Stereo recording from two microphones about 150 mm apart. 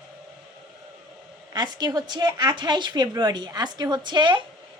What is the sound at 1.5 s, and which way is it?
A woman's voice, 25° right (ahead or behind).